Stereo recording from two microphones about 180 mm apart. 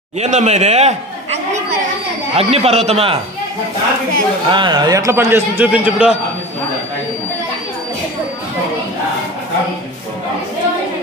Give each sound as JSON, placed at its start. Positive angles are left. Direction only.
{"t": 0.2, "sound": "a man's voice", "side_deg": -40}
{"t": 4.5, "sound": "a man's voice", "side_deg": -25}